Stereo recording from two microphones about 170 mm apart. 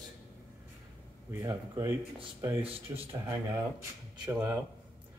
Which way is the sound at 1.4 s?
20° right (ahead or behind).